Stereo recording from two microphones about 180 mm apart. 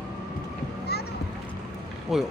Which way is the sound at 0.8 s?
60° left (ahead or behind).